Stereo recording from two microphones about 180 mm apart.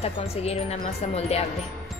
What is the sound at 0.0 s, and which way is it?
A woman's voice, 35° left (ahead or behind).